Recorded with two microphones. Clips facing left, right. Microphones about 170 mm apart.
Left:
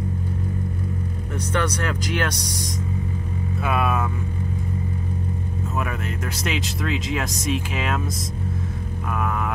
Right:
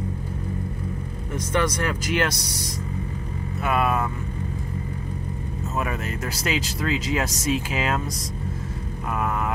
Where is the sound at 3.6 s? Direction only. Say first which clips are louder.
Right 1 dB; 5° left (ahead or behind).